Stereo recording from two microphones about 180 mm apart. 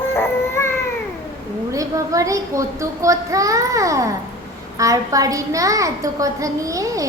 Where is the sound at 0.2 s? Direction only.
15° left (ahead or behind).